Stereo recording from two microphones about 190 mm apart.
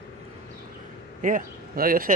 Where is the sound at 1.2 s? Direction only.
45° right (ahead or behind).